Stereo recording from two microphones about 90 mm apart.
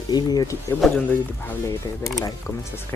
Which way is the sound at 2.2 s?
35° left (ahead or behind).